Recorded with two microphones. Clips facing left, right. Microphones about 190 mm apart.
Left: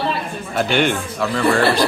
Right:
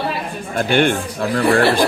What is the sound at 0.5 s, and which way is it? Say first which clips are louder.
Speech: right 2 dB; 50° right (ahead or behind).